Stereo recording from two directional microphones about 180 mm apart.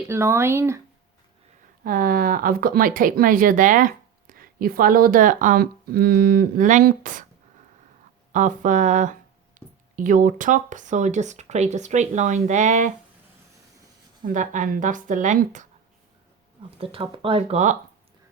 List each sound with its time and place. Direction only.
0.1 s speech: 15° right (ahead or behind)
1.8 s speech: 50° right (ahead or behind)
8.3 s speech: 45° right (ahead or behind)
14.3 s speech: 45° right (ahead or behind)
16.7 s speech: 30° right (ahead or behind)